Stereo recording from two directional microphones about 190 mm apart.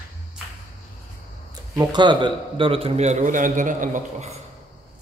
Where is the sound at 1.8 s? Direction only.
25° right (ahead or behind); by 4.4 s 40° right (ahead or behind).